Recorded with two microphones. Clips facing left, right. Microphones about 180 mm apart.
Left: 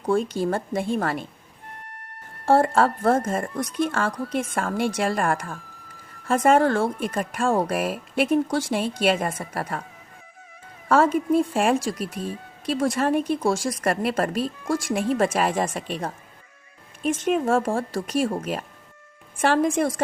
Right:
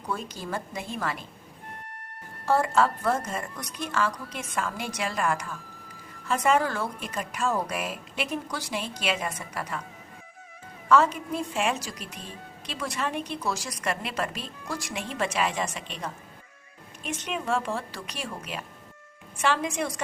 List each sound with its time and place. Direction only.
0.4 s speech: 50° left (ahead or behind)
2.6 s speech: 50° left (ahead or behind)
10.8 s speech: 50° left (ahead or behind)